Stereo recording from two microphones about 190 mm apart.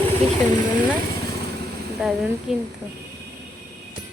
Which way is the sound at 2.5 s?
Centre (ahead or behind).